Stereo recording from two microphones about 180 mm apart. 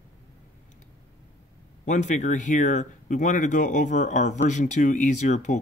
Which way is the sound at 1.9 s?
40° left (ahead or behind).